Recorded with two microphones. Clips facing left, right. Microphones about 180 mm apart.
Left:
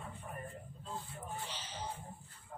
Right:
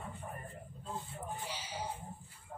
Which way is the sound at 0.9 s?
20° right (ahead or behind).